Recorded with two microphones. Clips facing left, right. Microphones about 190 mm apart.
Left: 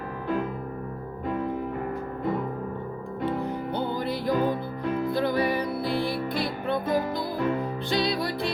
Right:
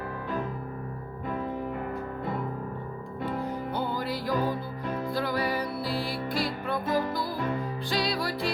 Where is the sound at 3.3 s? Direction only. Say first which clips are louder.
Left 2 dB; 20° left (ahead or behind).